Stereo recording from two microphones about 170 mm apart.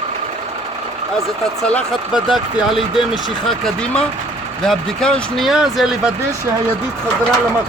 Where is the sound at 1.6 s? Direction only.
5° left (ahead or behind).